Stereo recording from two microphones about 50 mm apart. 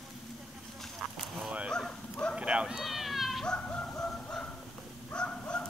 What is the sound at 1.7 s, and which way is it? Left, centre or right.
Bow-wow, centre.